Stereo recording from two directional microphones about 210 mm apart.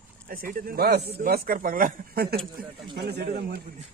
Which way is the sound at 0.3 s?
45° right (ahead or behind).